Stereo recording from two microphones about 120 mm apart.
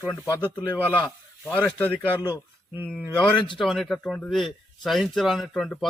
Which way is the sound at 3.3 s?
40° left (ahead or behind).